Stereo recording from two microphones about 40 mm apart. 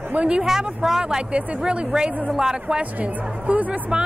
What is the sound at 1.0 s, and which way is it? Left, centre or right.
Speech, right.